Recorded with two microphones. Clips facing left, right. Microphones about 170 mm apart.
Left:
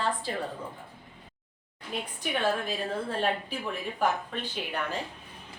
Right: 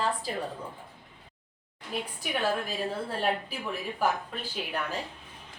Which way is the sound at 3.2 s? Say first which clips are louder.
Even; 5° right (ahead or behind).